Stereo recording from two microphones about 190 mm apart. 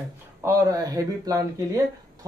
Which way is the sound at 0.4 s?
15° right (ahead or behind).